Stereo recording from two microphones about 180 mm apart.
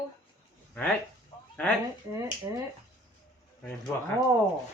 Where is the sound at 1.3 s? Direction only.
30° left (ahead or behind).